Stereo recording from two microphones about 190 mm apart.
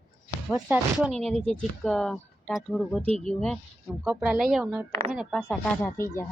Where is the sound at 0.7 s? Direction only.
5° right (ahead or behind).